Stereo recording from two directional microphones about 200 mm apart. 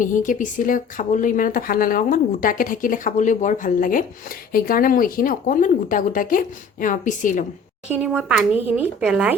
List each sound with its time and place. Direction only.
0.0 s speech: 40° left (ahead or behind)
7.9 s speech: 5° right (ahead or behind)